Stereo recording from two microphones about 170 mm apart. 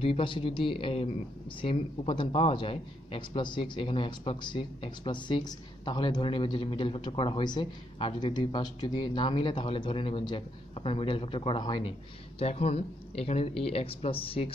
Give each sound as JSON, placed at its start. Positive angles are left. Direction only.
{"t": 0.0, "sound": "a man's voice", "side_deg": 30}